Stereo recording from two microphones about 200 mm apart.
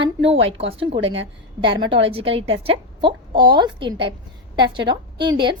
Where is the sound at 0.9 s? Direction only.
70° right (ahead or behind).